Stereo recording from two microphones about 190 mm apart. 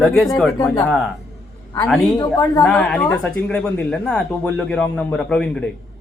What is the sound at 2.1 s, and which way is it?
Speech, 20° left (ahead or behind).